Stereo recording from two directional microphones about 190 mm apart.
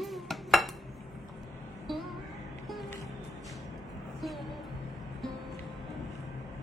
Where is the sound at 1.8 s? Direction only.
Centre (ahead or behind).